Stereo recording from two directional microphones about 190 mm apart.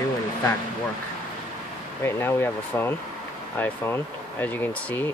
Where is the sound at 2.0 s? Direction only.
10° left (ahead or behind).